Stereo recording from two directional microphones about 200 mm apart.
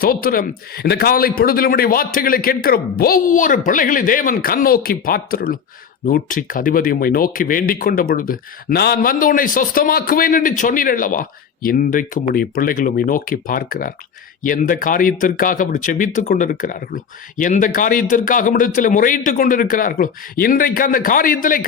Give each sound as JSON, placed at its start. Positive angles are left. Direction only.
{"t": 0.0, "sound": "speech", "side_deg": 45}